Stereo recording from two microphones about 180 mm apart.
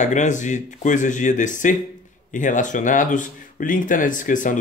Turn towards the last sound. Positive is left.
turn(degrees=45)  # may be behind; listen again after turning